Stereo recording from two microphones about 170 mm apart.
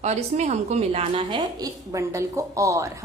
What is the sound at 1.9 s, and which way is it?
Speech, 15° right (ahead or behind).